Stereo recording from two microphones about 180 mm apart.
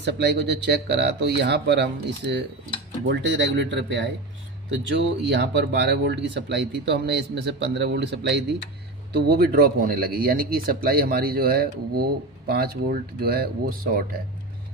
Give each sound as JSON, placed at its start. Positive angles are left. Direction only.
{"t": 0.0, "sound": "speech", "side_deg": -75}
{"t": 3.1, "sound": "speech", "side_deg": -90}
{"t": 5.3, "sound": "speech", "side_deg": -70}
{"t": 9.1, "sound": "speech", "side_deg": -60}